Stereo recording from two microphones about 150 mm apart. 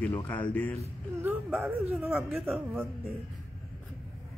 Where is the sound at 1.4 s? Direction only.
10° right (ahead or behind).